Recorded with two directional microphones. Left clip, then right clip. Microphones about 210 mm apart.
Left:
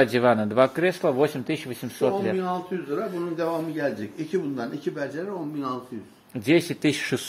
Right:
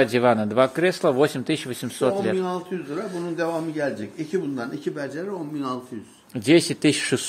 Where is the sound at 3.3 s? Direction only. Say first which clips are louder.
Right 3 dB; 40° right (ahead or behind).